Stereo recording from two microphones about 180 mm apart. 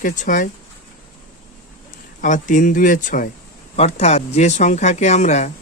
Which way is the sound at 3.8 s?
35° left (ahead or behind).